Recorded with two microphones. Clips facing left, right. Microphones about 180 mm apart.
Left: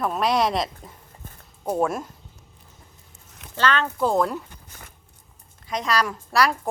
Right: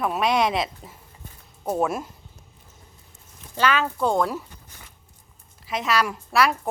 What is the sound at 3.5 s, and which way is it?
Speech, 10° right (ahead or behind).